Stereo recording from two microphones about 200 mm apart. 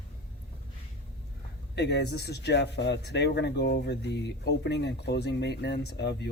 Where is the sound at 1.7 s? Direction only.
55° left (ahead or behind).